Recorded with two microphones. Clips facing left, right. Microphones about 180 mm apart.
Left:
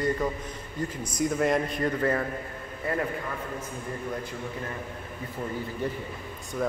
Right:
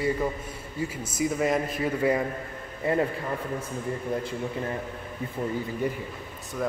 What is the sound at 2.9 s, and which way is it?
Speech, 25° right (ahead or behind).